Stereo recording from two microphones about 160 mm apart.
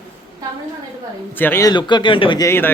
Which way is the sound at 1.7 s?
30° left (ahead or behind).